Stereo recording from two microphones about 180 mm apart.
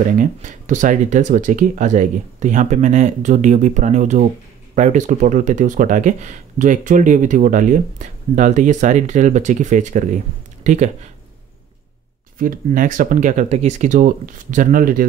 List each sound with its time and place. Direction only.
0.2 s speech: 45° right (ahead or behind)
12.4 s speech: 50° right (ahead or behind)